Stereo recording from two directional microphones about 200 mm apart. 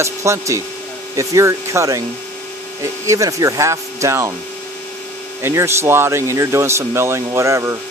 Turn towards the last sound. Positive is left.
turn(degrees=-15)  # may be behind; listen again after turning